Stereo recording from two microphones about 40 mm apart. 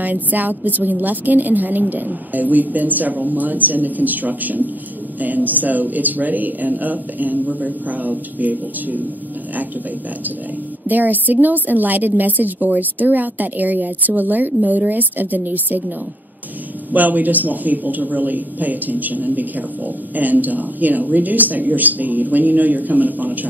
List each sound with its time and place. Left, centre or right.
0.0 s speech: right
10.9 s speech: right
16.9 s speech: right